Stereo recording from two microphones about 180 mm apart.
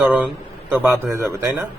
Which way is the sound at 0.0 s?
5° right (ahead or behind).